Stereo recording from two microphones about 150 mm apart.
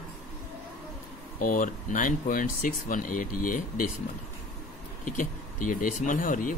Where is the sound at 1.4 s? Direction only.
60° left (ahead or behind).